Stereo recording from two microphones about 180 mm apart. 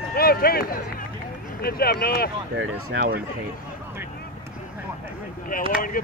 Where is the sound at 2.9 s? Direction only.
55° right (ahead or behind).